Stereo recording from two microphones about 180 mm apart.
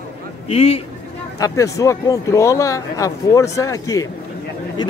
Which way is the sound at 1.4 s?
20° left (ahead or behind).